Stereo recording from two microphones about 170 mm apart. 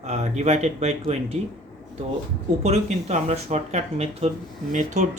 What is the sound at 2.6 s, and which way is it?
Speech, 40° right (ahead or behind).